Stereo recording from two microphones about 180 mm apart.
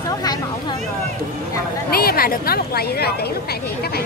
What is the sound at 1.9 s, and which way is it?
Speech, 55° left (ahead or behind).